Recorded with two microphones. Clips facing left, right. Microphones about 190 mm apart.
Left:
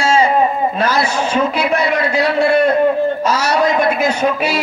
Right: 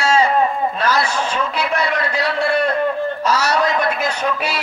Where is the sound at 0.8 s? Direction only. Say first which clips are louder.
Left 1 dB; 25° left (ahead or behind).